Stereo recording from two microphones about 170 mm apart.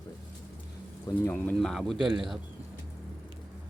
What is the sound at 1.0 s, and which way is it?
A man's voice, 15° left (ahead or behind).